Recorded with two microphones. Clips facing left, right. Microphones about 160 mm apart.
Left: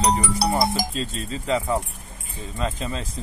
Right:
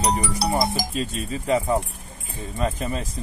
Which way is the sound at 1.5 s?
15° right (ahead or behind).